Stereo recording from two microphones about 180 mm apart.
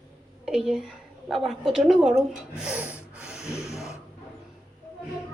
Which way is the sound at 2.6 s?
5° right (ahead or behind).